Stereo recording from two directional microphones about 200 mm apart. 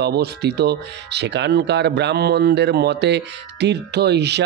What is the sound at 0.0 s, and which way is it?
Speech, 55° right (ahead or behind).